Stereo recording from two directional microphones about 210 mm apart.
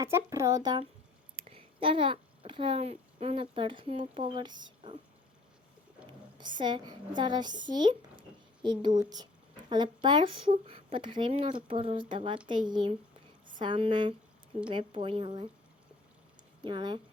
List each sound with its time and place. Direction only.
0.0 s a child's voice: 15° right (ahead or behind)
6.6 s speech: 20° right (ahead or behind)
16.6 s speech: 20° right (ahead or behind)